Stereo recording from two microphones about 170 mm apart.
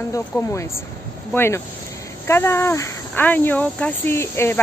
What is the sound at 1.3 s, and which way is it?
Speech, 15° left (ahead or behind).